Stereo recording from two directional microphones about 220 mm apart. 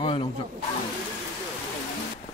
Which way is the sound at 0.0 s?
25° left (ahead or behind).